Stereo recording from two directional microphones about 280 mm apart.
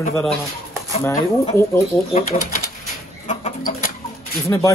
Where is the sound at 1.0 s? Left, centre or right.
Centre.